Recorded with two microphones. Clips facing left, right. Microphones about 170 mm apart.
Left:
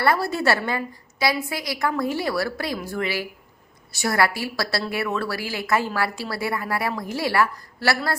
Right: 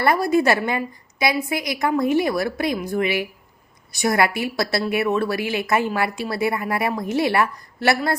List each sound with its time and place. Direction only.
0.0 s a woman's voice: 15° right (ahead or behind)